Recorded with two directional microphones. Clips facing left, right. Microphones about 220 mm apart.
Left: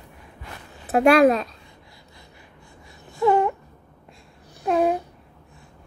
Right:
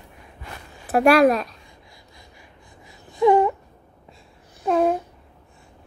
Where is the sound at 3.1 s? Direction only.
10° right (ahead or behind).